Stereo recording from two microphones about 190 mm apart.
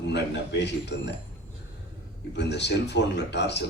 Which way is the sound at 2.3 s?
65° left (ahead or behind).